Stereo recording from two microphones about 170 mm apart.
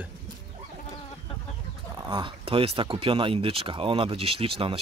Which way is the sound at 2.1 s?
30° right (ahead or behind).